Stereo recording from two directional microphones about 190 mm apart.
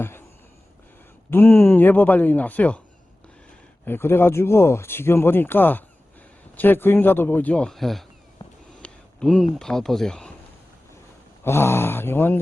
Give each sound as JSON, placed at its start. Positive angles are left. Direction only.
{"t": 1.3, "sound": "speech", "side_deg": 10}
{"t": 3.8, "sound": "speech", "side_deg": 10}
{"t": 8.4, "sound": "a sound", "side_deg": 20}
{"t": 8.8, "sound": "a sound", "side_deg": 5}
{"t": 9.6, "sound": "speech", "side_deg": 5}
{"t": 11.4, "sound": "speech", "side_deg": 15}